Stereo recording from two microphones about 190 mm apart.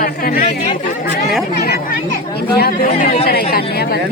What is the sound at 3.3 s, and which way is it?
Speech, 55° left (ahead or behind).